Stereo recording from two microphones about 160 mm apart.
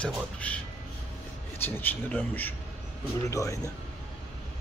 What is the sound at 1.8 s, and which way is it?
A man's voice, 10° left (ahead or behind).